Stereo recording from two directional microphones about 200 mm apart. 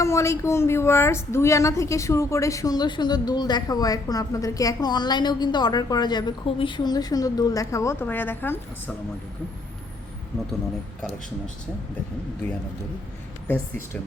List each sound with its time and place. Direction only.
0.0 s speech: 15° left (ahead or behind)
13.5 s speech: 10° left (ahead or behind)